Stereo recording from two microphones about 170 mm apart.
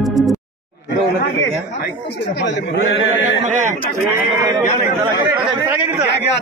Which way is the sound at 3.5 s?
45° right (ahead or behind).